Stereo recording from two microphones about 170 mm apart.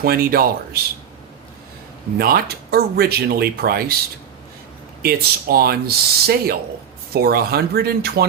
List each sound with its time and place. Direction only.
0.0 s speech: 60° right (ahead or behind)
2.1 s speech: 60° right (ahead or behind)
5.0 s speech: 65° right (ahead or behind)